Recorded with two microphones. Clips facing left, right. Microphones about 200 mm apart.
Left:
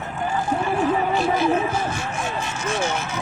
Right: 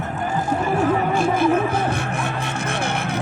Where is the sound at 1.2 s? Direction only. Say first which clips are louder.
Right 2 dB; 55° right (ahead or behind).